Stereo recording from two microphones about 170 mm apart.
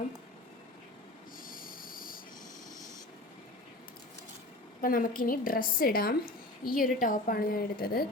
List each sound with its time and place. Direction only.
1.4 s rub: 55° left (ahead or behind)
4.8 s a woman's voice: 55° left (ahead or behind)